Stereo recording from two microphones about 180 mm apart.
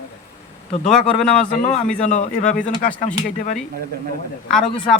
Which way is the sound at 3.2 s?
40° left (ahead or behind).